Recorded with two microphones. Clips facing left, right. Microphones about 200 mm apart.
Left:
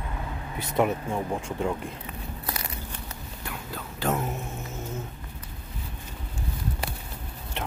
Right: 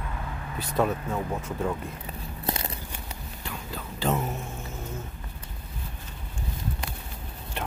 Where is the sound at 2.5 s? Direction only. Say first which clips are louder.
Right 6 dB; 25° right (ahead or behind).